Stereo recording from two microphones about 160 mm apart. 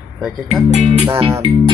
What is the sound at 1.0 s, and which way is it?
Music, 35° right (ahead or behind).